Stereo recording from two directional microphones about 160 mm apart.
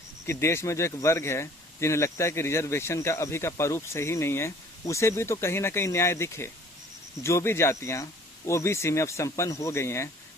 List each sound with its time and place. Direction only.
0.3 s speech: 15° left (ahead or behind)